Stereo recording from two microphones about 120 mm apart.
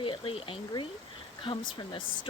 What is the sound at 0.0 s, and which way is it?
Speech, 50° left (ahead or behind).